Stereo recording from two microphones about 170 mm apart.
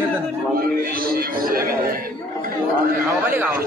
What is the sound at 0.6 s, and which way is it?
A man's voice, 55° right (ahead or behind).